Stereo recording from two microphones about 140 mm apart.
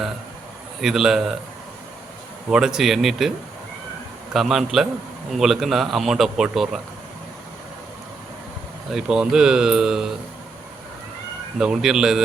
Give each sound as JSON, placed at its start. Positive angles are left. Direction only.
{"t": 0.8, "sound": "speech", "side_deg": 0}
{"t": 2.5, "sound": "speech", "side_deg": -5}
{"t": 4.4, "sound": "speech", "side_deg": 0}
{"t": 8.9, "sound": "speech", "side_deg": -5}
{"t": 11.5, "sound": "speech", "side_deg": -5}